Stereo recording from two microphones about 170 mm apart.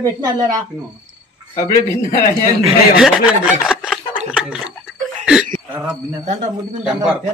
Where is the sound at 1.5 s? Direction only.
50° left (ahead or behind).